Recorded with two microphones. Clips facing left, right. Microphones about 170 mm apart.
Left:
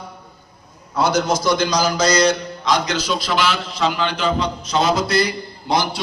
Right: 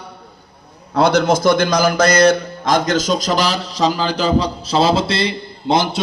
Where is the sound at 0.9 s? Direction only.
60° right (ahead or behind).